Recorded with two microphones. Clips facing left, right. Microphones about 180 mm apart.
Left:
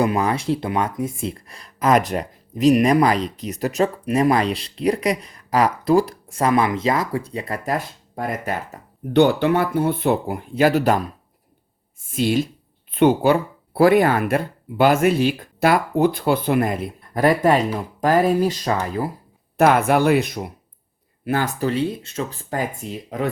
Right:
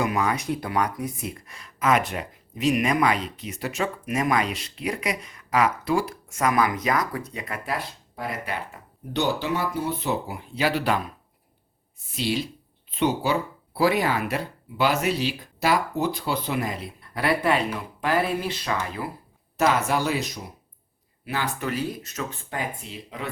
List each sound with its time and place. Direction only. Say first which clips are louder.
0.0 s speech: left 5 dB; 30° left (ahead or behind)
9.2 s speech: left 6 dB; 60° left (ahead or behind); by 11.1 s 45° left (ahead or behind)
12.1 s speech: left 7 dB; 50° left (ahead or behind)
19.5 s speech: left 7 dB; 55° left (ahead or behind)
21.6 s speech: left 7 dB; 30° left (ahead or behind); by 23.3 s 45° left (ahead or behind)